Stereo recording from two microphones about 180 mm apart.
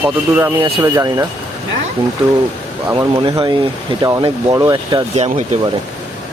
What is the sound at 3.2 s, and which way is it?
Speech, 30° right (ahead or behind).